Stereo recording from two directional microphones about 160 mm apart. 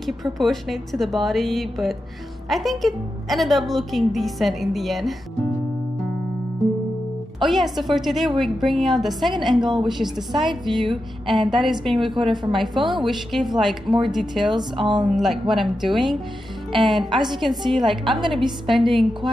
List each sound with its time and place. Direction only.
0.0 s a woman's voice: centre (ahead or behind)
7.3 s a woman's voice: centre (ahead or behind)
12.2 s a woman's voice: 30° right (ahead or behind)
12.5 s a woman's voice: centre (ahead or behind)
14.6 s speech: 30° right (ahead or behind)
15.1 s a woman's voice: centre (ahead or behind)